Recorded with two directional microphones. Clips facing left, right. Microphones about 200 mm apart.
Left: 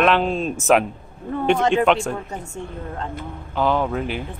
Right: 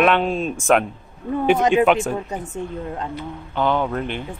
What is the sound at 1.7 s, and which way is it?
Speech, 5° right (ahead or behind).